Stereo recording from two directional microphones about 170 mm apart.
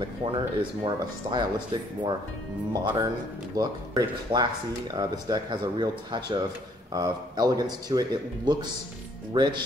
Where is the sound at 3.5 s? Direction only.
20° right (ahead or behind).